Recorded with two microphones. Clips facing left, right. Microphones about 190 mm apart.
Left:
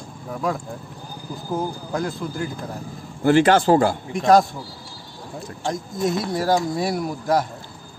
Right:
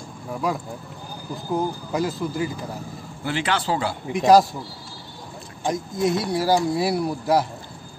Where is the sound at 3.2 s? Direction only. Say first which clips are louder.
Left 10 dB; 45° left (ahead or behind).